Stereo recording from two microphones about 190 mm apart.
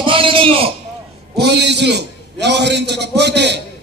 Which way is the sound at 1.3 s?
60° right (ahead or behind).